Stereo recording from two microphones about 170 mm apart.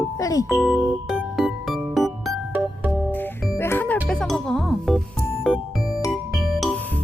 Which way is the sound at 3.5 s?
15° left (ahead or behind).